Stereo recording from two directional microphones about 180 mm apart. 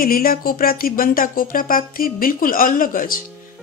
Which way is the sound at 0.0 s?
55° left (ahead or behind).